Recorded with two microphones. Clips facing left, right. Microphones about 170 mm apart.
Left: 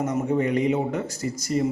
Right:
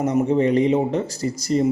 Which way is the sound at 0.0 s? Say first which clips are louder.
Right 5 dB; 30° right (ahead or behind).